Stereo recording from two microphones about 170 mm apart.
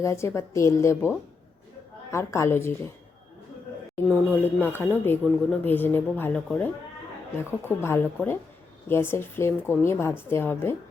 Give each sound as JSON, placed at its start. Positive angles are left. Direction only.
{"t": 0.0, "sound": "speech", "side_deg": 15}
{"t": 4.1, "sound": "speech", "side_deg": 10}
{"t": 7.7, "sound": "speech", "side_deg": 15}